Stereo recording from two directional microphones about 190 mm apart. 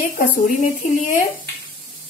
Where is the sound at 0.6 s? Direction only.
45° left (ahead or behind).